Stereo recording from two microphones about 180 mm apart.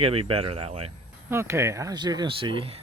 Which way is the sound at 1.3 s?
15° right (ahead or behind).